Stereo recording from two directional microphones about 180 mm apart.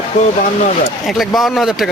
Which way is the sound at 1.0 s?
Centre (ahead or behind).